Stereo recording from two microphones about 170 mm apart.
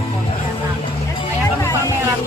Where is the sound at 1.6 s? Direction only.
15° left (ahead or behind).